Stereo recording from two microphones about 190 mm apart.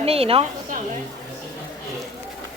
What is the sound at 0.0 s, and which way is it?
Speech, 30° right (ahead or behind).